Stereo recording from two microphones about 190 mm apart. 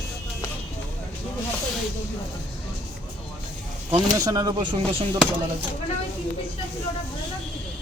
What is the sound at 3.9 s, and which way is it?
Speech, 20° right (ahead or behind).